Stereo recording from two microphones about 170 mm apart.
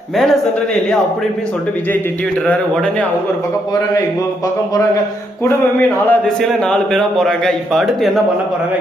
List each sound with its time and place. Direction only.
6.1 s a man's voice: centre (ahead or behind)